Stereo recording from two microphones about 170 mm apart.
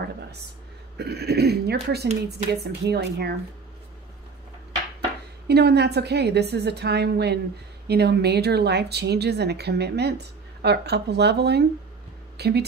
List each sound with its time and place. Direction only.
0.9 s speech: 75° right (ahead or behind)
5.5 s speech: 70° right (ahead or behind)